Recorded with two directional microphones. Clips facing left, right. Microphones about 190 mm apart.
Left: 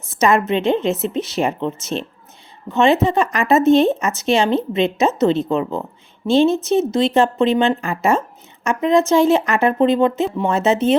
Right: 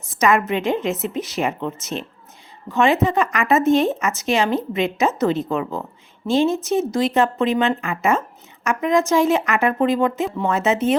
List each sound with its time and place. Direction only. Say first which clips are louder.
0.2 s speech: left 2 dB; 25° left (ahead or behind)